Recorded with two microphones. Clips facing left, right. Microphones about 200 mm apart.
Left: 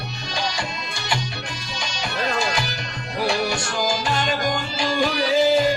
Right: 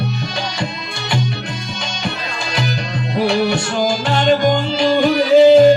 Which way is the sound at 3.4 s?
60° right (ahead or behind).